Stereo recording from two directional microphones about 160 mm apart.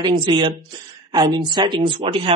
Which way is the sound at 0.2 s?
30° right (ahead or behind).